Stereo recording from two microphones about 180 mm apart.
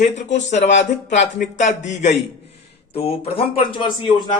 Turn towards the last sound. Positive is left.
turn(degrees=25)  # may be behind; listen again after turning